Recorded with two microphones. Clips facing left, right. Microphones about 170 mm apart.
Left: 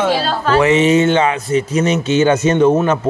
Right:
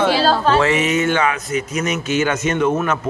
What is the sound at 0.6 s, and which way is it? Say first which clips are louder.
Speech: left 6 dB; 25° left (ahead or behind).